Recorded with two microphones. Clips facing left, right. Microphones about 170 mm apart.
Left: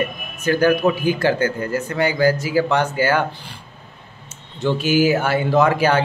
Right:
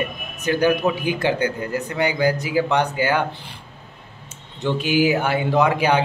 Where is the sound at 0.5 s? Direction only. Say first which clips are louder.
Left 2 dB; 20° right (ahead or behind).